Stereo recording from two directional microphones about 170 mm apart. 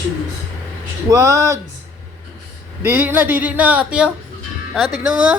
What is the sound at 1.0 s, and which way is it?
Speech, 20° right (ahead or behind).